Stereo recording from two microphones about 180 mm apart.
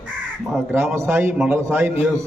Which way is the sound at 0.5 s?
10° right (ahead or behind).